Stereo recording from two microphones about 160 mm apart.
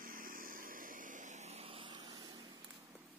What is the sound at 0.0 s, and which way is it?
Vehicle, 60° right (ahead or behind).